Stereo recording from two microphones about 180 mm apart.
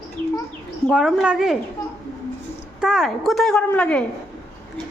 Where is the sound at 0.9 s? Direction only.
5° right (ahead or behind).